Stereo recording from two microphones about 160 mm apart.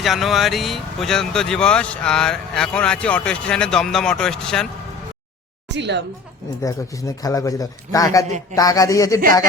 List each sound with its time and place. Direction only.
0.0 s speech: centre (ahead or behind)
5.6 s a woman's voice: 90° right
6.6 s a man's voice: 20° left (ahead or behind)